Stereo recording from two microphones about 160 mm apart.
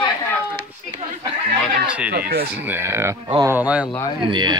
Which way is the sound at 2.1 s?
75° right (ahead or behind).